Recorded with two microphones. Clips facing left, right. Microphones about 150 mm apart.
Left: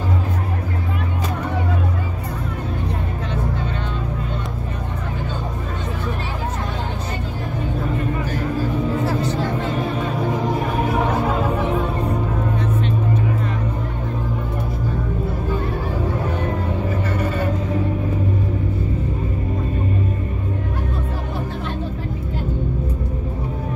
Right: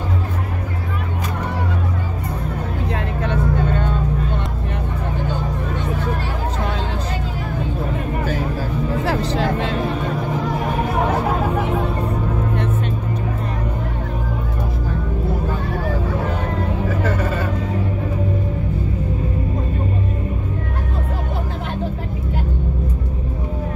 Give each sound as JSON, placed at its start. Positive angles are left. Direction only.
{"t": 3.3, "sound": "vehicle", "side_deg": -50}
{"t": 9.0, "sound": "music", "side_deg": -90}